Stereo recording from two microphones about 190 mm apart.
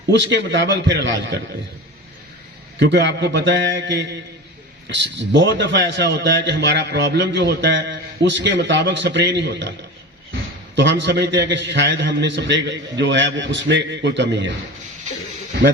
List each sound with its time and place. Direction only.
0.1 s a man's voice: 70° right (ahead or behind)
2.7 s a man's voice: 65° right (ahead or behind)
10.8 s a man's voice: 70° right (ahead or behind)